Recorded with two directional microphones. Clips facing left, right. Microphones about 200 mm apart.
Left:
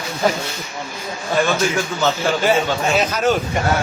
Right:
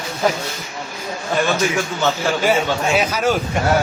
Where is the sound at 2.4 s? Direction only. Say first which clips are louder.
Even; 5° right (ahead or behind).